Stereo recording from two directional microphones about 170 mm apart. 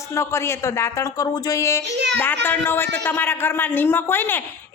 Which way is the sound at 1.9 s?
90° right.